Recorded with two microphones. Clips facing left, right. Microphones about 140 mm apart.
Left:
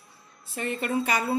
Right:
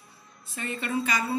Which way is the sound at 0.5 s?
55° left (ahead or behind).